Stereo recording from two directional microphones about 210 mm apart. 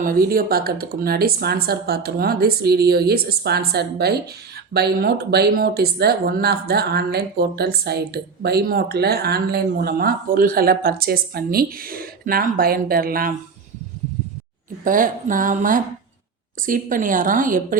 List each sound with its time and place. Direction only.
0.0 s speech: 45° right (ahead or behind)
14.8 s a woman's voice: 40° right (ahead or behind)